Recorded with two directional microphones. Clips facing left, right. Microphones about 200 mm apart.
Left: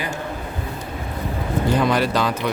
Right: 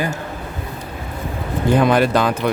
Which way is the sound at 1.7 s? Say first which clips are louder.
Right 6 dB; 55° right (ahead or behind).